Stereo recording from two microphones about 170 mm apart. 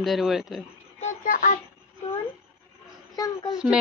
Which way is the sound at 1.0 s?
50° left (ahead or behind).